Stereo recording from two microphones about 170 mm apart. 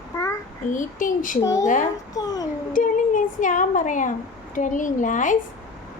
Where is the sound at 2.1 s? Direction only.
20° left (ahead or behind).